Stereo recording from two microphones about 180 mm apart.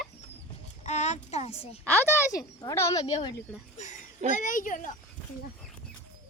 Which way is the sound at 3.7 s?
40° left (ahead or behind).